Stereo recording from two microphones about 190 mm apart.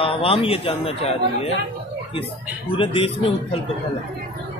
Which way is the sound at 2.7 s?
25° left (ahead or behind).